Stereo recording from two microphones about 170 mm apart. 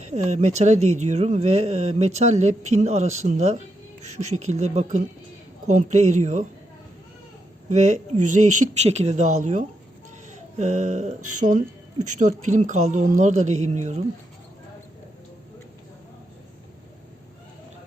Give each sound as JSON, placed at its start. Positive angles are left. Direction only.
{"t": 0.0, "sound": "speech", "side_deg": -40}
{"t": 7.7, "sound": "speech", "side_deg": -45}